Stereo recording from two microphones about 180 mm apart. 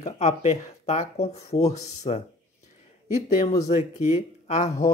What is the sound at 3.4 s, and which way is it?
Speech, 40° left (ahead or behind).